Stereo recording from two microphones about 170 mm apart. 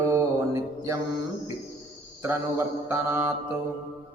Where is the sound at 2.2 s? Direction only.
15° right (ahead or behind).